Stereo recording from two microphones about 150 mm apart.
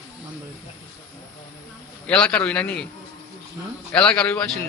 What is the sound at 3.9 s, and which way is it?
Speech, 5° left (ahead or behind).